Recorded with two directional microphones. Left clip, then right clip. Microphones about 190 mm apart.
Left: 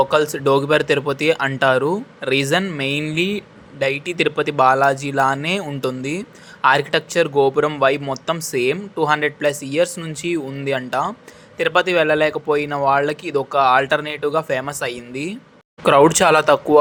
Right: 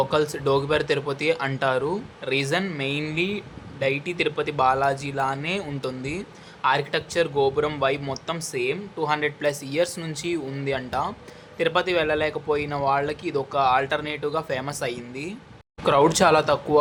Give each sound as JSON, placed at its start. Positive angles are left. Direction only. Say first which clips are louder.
{"t": 0.0, "sound": "a man's voice", "louder": "left 6 dB", "side_deg": 25}